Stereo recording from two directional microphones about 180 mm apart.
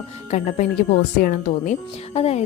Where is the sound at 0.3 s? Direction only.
40° left (ahead or behind).